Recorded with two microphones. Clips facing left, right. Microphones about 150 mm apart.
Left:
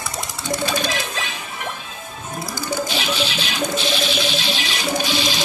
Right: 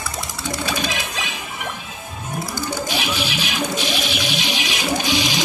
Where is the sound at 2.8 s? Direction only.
10° right (ahead or behind).